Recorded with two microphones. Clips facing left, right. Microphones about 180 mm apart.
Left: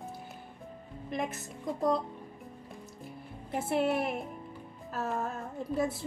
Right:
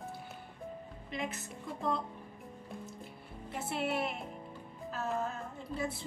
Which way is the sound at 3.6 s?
50° left (ahead or behind).